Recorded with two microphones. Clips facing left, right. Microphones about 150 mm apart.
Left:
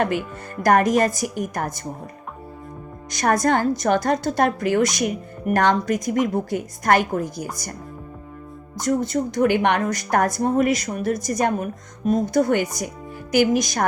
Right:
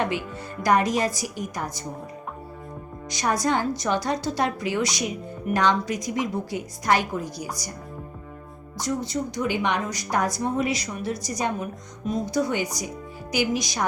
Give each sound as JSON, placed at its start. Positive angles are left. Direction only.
{"t": 0.6, "sound": "a woman's voice", "side_deg": 50}
{"t": 3.1, "sound": "a woman's voice", "side_deg": 50}
{"t": 9.0, "sound": "a woman's voice", "side_deg": 55}